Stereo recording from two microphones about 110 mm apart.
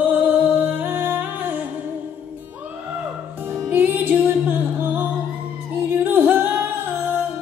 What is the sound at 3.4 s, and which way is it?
Music, 20° right (ahead or behind).